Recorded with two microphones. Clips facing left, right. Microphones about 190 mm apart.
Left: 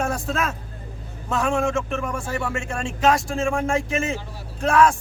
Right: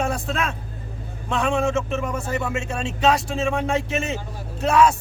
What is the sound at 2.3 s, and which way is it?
Speech, 20° right (ahead or behind).